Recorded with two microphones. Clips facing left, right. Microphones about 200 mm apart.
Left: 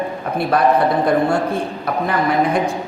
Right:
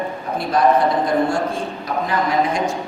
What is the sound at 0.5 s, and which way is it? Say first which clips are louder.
A woman's voice: even; 60° left (ahead or behind).